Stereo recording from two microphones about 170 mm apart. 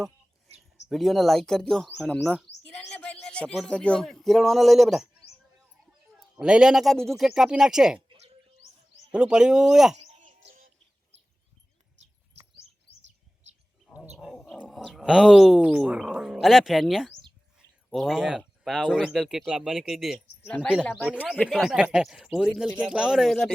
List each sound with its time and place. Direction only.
0.9 s speech: centre (ahead or behind)
6.4 s speech: 5° right (ahead or behind)
9.1 s speech: 5° right (ahead or behind)
10.0 s a sound: 45° right (ahead or behind)
14.2 s speech: centre (ahead or behind)
20.8 s speech: 10° left (ahead or behind)
21.1 s speech: 10° right (ahead or behind)
21.3 s speech: 5° left (ahead or behind)